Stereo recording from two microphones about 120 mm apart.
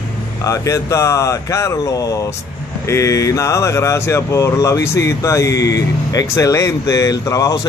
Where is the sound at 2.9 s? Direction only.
25° left (ahead or behind).